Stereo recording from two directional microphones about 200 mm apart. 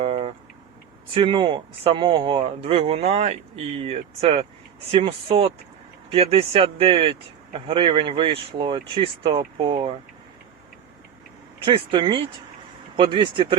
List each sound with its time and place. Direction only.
0.0 s vehicle: 30° right (ahead or behind)
1.1 s speech: 25° right (ahead or behind)
11.6 s speech: 25° right (ahead or behind)